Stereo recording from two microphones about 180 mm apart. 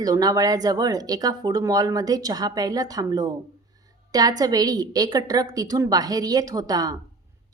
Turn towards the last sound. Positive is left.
turn(degrees=-20)  # may be behind; listen again after turning